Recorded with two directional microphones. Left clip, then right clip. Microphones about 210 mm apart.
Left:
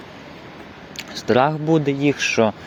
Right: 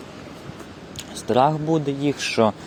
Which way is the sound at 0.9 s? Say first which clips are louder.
Left 2 dB; 15° left (ahead or behind).